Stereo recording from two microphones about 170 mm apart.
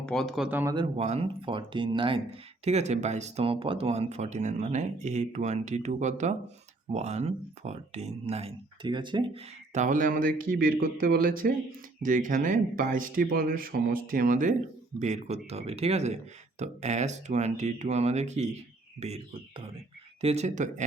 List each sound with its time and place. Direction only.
0.0 s a man's voice: 5° left (ahead or behind); by 0.8 s 15° right (ahead or behind)
0.8 s speech: 40° right (ahead or behind)
2.6 s speech: 40° right (ahead or behind)
9.7 s speech: 50° right (ahead or behind)